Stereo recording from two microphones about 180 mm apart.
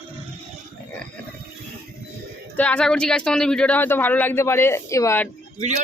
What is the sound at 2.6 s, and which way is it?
Speech, 5° left (ahead or behind).